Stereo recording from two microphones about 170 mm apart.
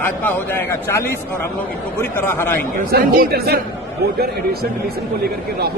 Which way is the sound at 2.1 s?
15° left (ahead or behind).